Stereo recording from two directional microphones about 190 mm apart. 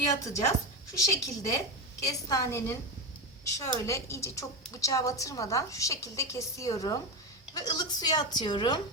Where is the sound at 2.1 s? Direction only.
15° left (ahead or behind).